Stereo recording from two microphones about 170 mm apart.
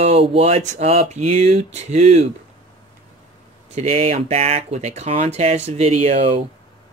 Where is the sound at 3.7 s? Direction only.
35° right (ahead or behind).